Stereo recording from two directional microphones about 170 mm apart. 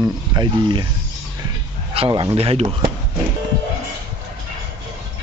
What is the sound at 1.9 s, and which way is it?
Speech, 30° right (ahead or behind).